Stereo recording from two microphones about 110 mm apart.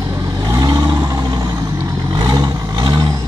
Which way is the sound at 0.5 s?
30° right (ahead or behind).